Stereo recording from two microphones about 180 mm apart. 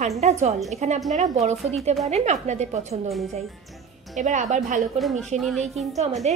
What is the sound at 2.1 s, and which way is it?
A woman's voice, 40° right (ahead or behind).